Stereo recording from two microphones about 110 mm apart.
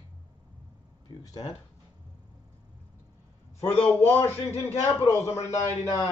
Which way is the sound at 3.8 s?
20° left (ahead or behind).